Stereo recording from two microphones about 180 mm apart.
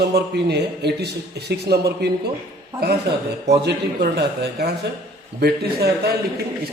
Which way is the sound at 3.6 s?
65° right (ahead or behind).